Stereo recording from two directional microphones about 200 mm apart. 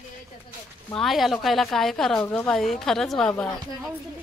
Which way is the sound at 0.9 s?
Centre (ahead or behind).